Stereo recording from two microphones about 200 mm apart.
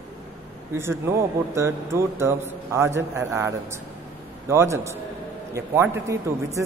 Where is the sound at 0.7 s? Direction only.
10° right (ahead or behind).